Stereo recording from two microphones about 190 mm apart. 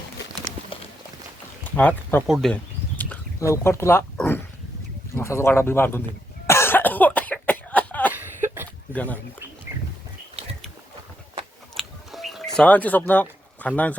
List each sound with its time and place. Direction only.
0.7 s walk: 30° left (ahead or behind)
1.6 s speech: 10° left (ahead or behind)
2.2 s speech: centre (ahead or behind)
3.0 s speech: 10° left (ahead or behind)
6.5 s cough: 10° left (ahead or behind)
8.1 s cough: 10° right (ahead or behind)
8.9 s speech: 10° left (ahead or behind)
9.7 s bird: 10° right (ahead or behind)
11.7 s music: centre (ahead or behind)
12.5 s speech: 5° left (ahead or behind)